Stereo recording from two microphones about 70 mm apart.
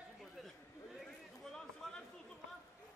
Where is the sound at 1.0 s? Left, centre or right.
Centre.